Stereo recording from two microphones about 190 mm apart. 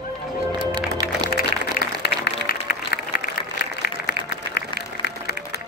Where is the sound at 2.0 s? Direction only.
60° left (ahead or behind).